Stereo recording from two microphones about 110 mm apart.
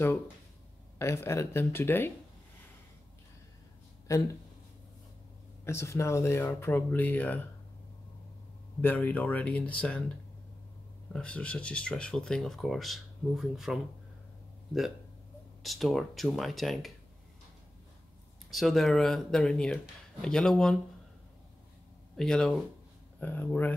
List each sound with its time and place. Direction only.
0.9 s speech: 25° left (ahead or behind)
4.1 s speech: 30° left (ahead or behind)
5.7 s speech: 25° left (ahead or behind)
8.8 s speech: 15° left (ahead or behind)
11.1 s speech: 10° left (ahead or behind)
15.6 s speech: centre (ahead or behind)
18.5 s speech: centre (ahead or behind)
22.1 s speech: 5° left (ahead or behind)
23.2 s speech: 15° left (ahead or behind)